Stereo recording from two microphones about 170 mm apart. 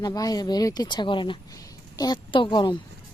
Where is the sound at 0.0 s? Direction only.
20° left (ahead or behind).